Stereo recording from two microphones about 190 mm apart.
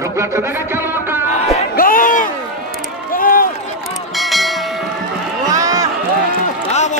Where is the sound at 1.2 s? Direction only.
35° left (ahead or behind).